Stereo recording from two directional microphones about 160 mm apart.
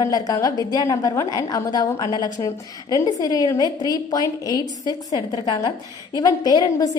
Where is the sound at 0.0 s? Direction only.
25° left (ahead or behind).